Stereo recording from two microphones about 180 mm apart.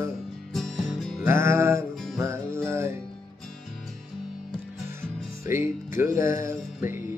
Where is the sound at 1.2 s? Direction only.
15° right (ahead or behind).